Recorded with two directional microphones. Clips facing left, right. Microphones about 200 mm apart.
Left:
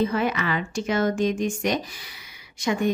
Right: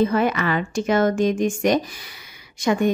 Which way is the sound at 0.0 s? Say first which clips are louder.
Right 4 dB; 50° right (ahead or behind).